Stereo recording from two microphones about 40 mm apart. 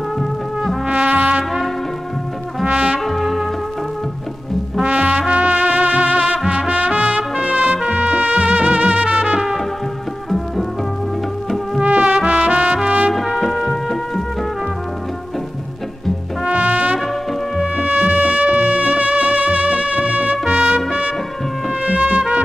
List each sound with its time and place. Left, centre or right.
0.8 s trumpet: right
2.6 s brass instrument: right
3.1 s music: centre
4.8 s music: right
6.7 s trumpet: right
11.8 s music: right
12.8 s trumpet: right
13.4 s music: centre
16.4 s brass instrument: right
17.7 s music: right